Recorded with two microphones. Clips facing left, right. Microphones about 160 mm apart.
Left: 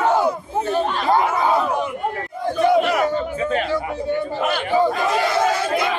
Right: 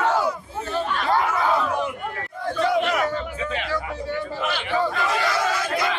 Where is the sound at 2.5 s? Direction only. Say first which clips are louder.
Left 5 dB; 15° left (ahead or behind).